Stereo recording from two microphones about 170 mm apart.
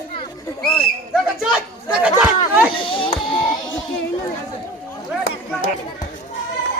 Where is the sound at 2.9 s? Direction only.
30° left (ahead or behind).